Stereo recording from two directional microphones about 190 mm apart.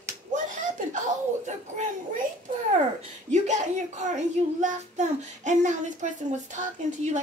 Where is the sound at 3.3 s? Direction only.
40° right (ahead or behind).